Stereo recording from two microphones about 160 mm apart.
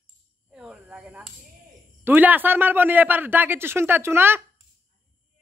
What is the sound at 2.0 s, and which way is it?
A man's voice, 10° right (ahead or behind).